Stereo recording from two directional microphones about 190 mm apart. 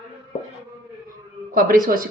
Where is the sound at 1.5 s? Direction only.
50° right (ahead or behind).